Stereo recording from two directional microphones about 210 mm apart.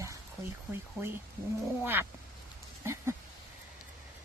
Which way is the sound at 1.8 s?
10° right (ahead or behind).